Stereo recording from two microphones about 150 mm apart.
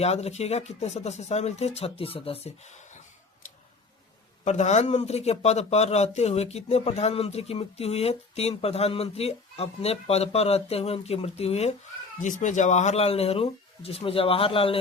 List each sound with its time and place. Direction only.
0.0 s speech: 45° left (ahead or behind)
4.4 s speech: 50° left (ahead or behind)
12.2 s speech: 55° left (ahead or behind); by 14.8 s 35° left (ahead or behind)